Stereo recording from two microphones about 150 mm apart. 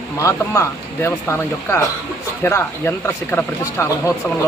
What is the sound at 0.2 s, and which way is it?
Speech, 20° left (ahead or behind).